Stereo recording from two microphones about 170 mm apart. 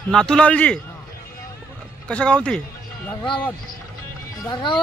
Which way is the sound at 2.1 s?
5° left (ahead or behind).